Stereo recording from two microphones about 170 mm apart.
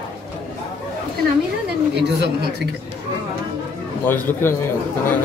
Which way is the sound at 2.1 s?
80° right.